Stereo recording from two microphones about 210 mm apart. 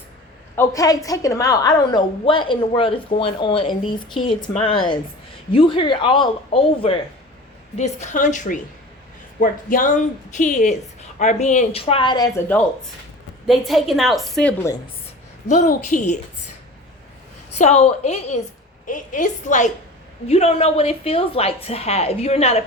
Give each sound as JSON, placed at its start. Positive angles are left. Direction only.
{"t": 0.5, "sound": "a woman's voice", "side_deg": 15}
{"t": 13.5, "sound": "a woman's voice", "side_deg": 0}
{"t": 15.4, "sound": "speech", "side_deg": 35}
{"t": 17.6, "sound": "a woman's voice", "side_deg": 30}